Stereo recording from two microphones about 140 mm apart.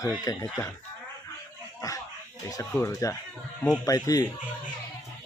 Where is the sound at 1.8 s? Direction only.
25° left (ahead or behind).